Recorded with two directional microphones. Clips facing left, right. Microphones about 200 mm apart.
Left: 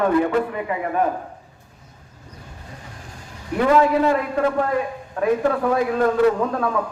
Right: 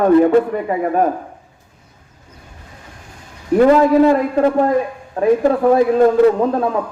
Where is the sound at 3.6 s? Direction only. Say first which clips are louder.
Right 6 dB; 35° right (ahead or behind).